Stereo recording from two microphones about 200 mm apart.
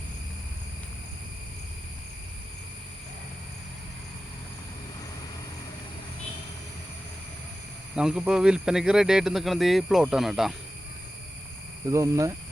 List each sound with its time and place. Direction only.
7.9 s speech: 5° right (ahead or behind)
11.9 s speech: 15° right (ahead or behind)